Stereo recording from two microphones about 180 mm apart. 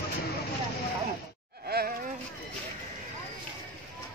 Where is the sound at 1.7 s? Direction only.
60° right (ahead or behind).